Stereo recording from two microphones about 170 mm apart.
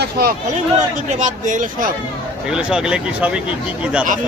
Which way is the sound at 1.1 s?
45° right (ahead or behind).